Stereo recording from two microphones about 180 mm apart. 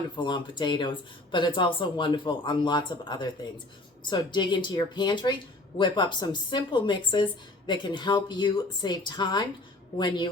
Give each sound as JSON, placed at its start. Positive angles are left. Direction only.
{"t": 0.2, "sound": "speech", "side_deg": 25}